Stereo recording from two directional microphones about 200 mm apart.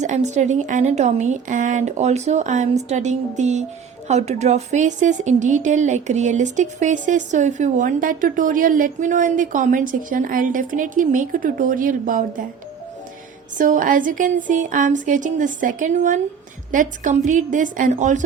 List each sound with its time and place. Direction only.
0.0 s a woman's voice: 35° right (ahead or behind)
13.6 s a woman's voice: 40° right (ahead or behind)